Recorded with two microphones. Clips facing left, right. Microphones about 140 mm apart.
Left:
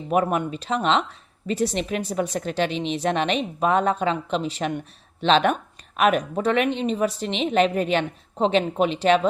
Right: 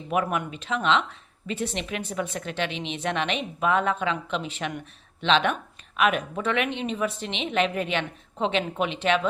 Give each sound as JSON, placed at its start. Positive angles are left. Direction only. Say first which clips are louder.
{"t": 0.1, "sound": "speech", "louder": "left 4 dB", "side_deg": 35}